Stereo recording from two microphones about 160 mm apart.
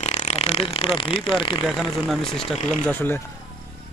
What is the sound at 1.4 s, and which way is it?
Speech, 30° left (ahead or behind).